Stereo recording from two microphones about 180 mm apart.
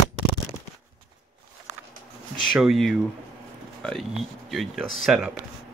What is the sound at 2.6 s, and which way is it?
Speech, centre (ahead or behind).